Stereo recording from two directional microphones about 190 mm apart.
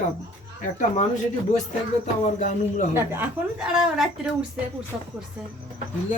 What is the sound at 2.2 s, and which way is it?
Speech, 40° left (ahead or behind).